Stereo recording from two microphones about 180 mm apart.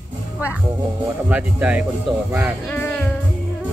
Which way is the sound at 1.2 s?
10° right (ahead or behind).